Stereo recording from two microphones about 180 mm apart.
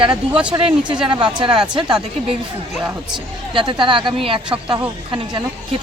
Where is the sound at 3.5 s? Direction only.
25° right (ahead or behind).